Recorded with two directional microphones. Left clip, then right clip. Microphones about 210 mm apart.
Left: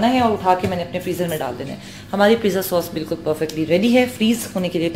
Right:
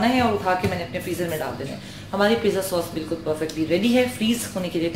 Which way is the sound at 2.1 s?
40° left (ahead or behind).